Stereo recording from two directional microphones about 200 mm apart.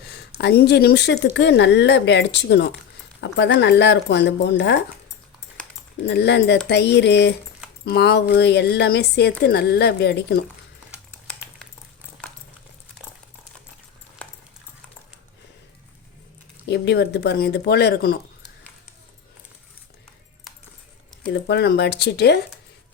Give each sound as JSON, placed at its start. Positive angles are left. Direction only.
{"t": 0.3, "sound": "speech", "side_deg": 55}
{"t": 6.1, "sound": "speech", "side_deg": 55}
{"t": 16.6, "sound": "speech", "side_deg": 60}
{"t": 21.3, "sound": "speech", "side_deg": 60}